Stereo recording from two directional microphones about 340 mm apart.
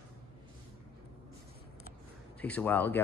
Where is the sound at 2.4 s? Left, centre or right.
Centre.